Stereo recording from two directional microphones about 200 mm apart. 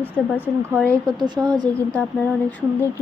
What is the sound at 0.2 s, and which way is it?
Speech, centre (ahead or behind).